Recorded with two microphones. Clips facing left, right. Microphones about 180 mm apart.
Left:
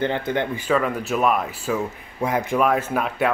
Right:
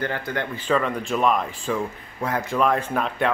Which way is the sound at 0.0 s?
20° left (ahead or behind).